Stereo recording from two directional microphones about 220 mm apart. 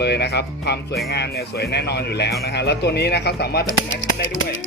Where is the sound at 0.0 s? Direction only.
50° left (ahead or behind).